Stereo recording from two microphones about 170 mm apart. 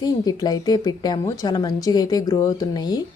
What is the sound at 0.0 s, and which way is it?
A woman's voice, 25° left (ahead or behind).